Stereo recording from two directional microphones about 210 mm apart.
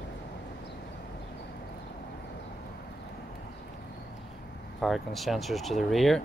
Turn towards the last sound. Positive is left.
turn(degrees=0)  # may be behind; listen again after turning